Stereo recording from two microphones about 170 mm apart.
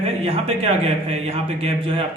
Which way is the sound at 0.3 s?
35° right (ahead or behind).